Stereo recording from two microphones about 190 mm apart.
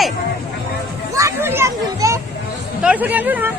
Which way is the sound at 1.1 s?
15° right (ahead or behind).